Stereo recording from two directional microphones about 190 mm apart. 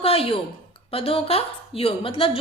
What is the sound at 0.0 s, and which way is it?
A woman's voice, 30° left (ahead or behind).